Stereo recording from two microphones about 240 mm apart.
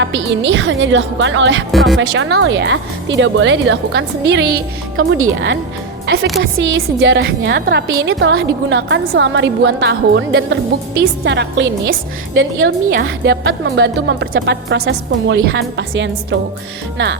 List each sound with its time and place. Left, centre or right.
0.0 s a woman's voice: right
1.7 s speech: centre
2.0 s a woman's voice: right
12.9 s a woman's voice: right